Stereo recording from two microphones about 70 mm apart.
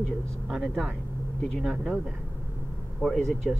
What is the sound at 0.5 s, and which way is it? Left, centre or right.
Speech, centre.